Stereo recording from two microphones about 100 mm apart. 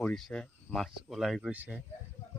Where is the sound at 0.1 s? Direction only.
5° left (ahead or behind).